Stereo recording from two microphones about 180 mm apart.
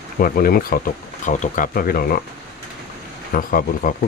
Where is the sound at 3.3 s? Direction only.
50° left (ahead or behind).